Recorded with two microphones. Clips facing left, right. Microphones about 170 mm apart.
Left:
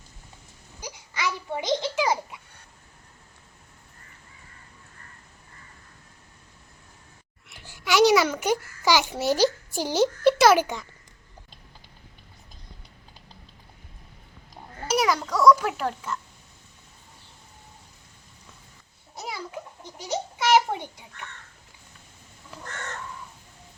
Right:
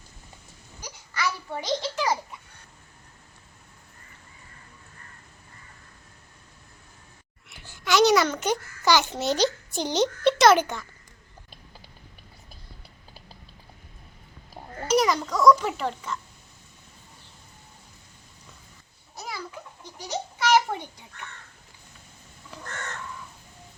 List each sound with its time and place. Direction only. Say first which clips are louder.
0.8 s a sound: right 1 dB; 10° left (ahead or behind)
7.6 s a child's voice: left 1 dB; 10° left (ahead or behind)
14.8 s babbling: right 2 dB; 5° left (ahead or behind)
20.0 s babbling: left 1 dB; 20° left (ahead or behind)